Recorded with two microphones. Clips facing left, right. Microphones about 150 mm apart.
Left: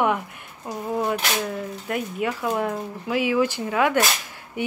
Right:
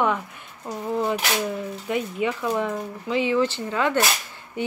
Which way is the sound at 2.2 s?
5° left (ahead or behind).